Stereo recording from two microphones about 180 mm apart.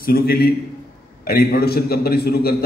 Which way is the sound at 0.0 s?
55° left (ahead or behind).